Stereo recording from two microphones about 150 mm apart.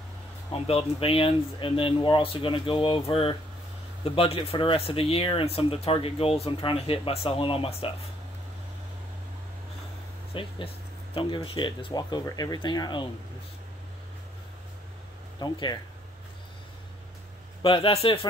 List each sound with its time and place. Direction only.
0.5 s speech: 40° left (ahead or behind)
10.3 s speech: 35° left (ahead or behind)
15.3 s speech: 25° left (ahead or behind)
17.6 s speech: 35° left (ahead or behind)